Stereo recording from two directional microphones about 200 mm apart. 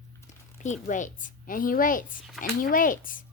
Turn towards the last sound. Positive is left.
turn(degrees=45)  # may be behind; listen again after turning